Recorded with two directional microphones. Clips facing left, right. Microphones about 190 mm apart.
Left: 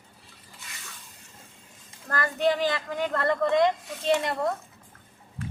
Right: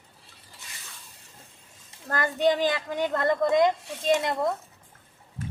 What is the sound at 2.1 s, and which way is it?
Speech, 20° right (ahead or behind).